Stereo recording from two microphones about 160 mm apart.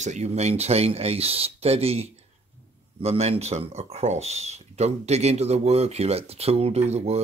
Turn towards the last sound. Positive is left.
turn(degrees=-40)  # may be behind; listen again after turning